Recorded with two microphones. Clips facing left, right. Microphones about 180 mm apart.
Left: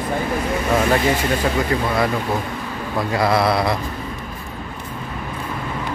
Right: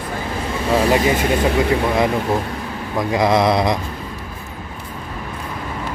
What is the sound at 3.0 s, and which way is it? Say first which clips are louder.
Speech: right 2 dB; 15° right (ahead or behind).